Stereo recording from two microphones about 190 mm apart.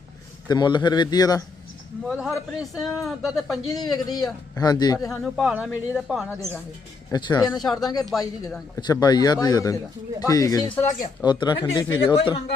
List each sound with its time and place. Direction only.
0.4 s a man's voice: 20° left (ahead or behind)
2.0 s speech: centre (ahead or behind)
3.7 s a man's voice: 20° left (ahead or behind)
5.0 s speech: centre (ahead or behind)
7.1 s a man's voice: 20° left (ahead or behind)
7.4 s speech: centre (ahead or behind)
8.2 s a man's voice: 20° left (ahead or behind)